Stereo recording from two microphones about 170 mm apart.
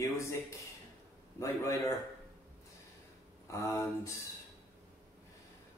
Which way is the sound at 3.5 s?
15° left (ahead or behind).